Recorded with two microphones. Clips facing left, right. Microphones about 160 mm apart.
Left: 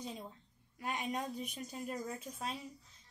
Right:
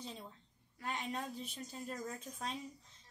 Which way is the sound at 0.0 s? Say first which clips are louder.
Left 3 dB; 15° left (ahead or behind).